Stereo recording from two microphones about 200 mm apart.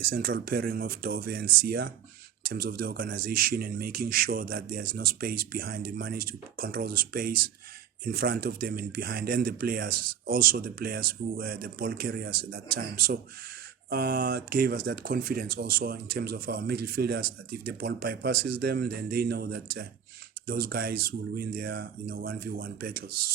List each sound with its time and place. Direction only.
0.1 s speech: 45° right (ahead or behind)